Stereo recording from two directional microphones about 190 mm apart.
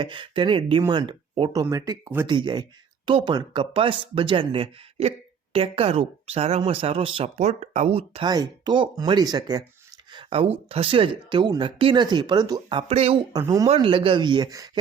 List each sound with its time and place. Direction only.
0.0 s speech: 25° right (ahead or behind)
10.1 s a sound: 25° right (ahead or behind)
10.7 s speech: 30° right (ahead or behind)
13.3 s speech: 20° right (ahead or behind)